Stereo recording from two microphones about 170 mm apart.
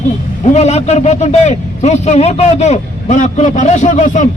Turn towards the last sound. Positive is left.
turn(degrees=45)  # may be behind; listen again after turning